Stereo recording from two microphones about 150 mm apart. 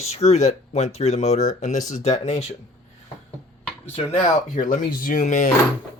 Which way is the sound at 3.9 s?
45° left (ahead or behind).